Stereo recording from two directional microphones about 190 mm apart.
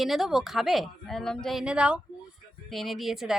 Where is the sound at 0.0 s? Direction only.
Centre (ahead or behind).